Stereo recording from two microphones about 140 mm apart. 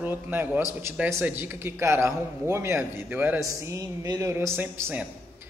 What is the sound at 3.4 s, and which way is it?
Speech, 25° right (ahead or behind).